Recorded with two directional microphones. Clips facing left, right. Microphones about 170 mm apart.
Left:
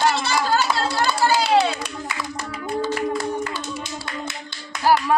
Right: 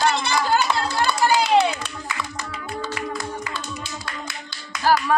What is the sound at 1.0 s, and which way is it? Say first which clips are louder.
Hands: right 1 dB; 10° left (ahead or behind).